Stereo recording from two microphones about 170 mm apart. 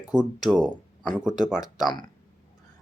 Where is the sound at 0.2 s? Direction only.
Centre (ahead or behind).